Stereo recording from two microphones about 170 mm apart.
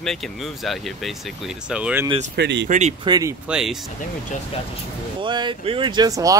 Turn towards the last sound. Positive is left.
turn(degrees=-20)  # may be behind; listen again after turning